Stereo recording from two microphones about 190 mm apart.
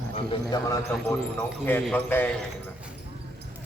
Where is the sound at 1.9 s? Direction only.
10° left (ahead or behind).